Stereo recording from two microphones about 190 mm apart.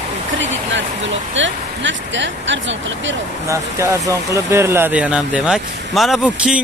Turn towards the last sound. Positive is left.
turn(degrees=-5)  # may be behind; listen again after turning